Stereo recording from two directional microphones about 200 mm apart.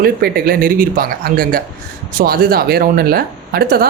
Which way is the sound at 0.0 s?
50° right (ahead or behind).